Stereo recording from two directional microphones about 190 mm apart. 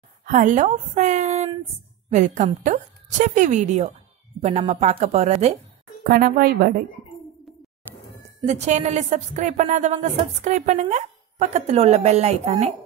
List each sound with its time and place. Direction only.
0.2 s speech: 40° right (ahead or behind)
6.0 s a woman's voice: 55° right (ahead or behind)
8.5 s speech: 35° right (ahead or behind)